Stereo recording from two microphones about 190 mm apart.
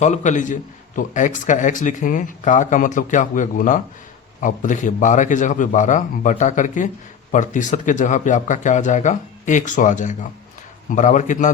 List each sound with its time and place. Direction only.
0.0 s a man's voice: 40° left (ahead or behind)